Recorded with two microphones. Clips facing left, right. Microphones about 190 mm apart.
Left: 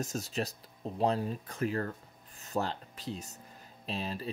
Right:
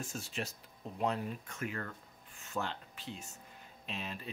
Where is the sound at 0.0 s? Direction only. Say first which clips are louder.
Left 6 dB; 40° left (ahead or behind).